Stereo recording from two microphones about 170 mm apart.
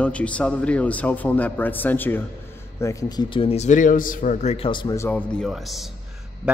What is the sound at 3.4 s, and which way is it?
Speech, 40° left (ahead or behind).